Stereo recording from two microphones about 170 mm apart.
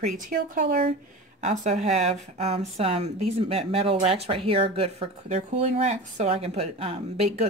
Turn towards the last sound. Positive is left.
turn(degrees=-35)  # may be behind; listen again after turning